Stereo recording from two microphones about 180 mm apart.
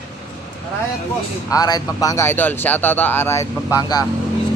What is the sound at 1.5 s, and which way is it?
Speech, 20° left (ahead or behind).